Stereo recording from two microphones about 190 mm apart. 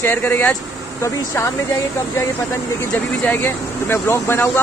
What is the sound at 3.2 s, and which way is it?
Speech, 10° left (ahead or behind).